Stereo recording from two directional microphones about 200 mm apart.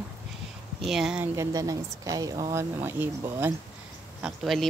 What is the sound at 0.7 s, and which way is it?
A woman's voice, centre (ahead or behind).